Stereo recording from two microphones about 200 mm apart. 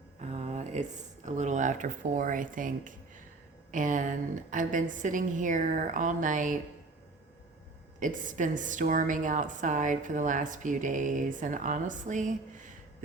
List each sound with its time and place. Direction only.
0.2 s a woman's voice: 30° right (ahead or behind)
7.9 s a woman's voice: 40° right (ahead or behind)